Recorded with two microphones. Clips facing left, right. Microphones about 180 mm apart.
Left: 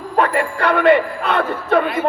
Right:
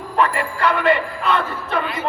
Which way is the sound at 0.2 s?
60° left (ahead or behind).